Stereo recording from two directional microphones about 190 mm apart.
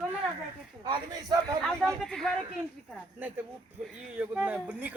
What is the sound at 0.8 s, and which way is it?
Speech, 20° right (ahead or behind).